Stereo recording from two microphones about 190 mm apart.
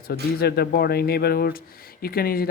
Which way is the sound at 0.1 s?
55° left (ahead or behind).